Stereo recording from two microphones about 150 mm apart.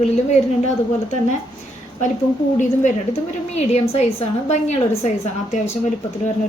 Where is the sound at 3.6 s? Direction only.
45° left (ahead or behind).